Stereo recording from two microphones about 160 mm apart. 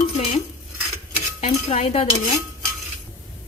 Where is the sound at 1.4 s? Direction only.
40° left (ahead or behind).